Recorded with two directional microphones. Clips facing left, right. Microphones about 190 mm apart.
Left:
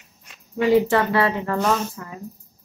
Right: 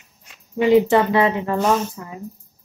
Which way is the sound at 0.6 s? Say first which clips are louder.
Right 3 dB; 20° right (ahead or behind).